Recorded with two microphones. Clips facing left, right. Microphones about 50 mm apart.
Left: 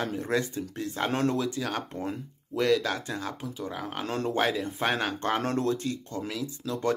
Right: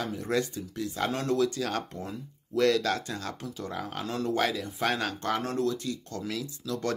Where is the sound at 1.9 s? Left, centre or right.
Left.